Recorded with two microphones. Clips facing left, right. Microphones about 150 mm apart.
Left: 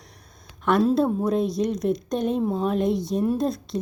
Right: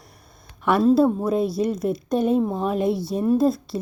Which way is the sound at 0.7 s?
5° right (ahead or behind).